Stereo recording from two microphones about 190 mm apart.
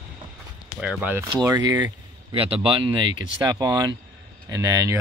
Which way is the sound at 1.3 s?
20° right (ahead or behind).